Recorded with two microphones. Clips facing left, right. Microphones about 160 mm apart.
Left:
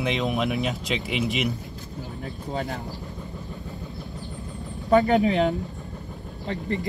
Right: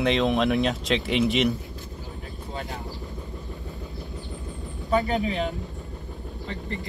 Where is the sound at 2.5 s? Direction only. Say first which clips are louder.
Left 5 dB; 40° left (ahead or behind).